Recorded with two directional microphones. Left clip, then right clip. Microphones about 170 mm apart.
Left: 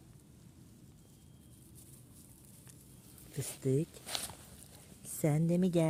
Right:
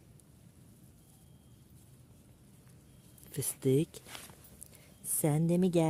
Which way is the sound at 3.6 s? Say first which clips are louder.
Right 4 dB; 30° right (ahead or behind).